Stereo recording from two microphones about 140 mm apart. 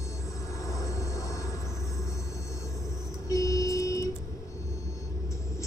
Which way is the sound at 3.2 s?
25° left (ahead or behind).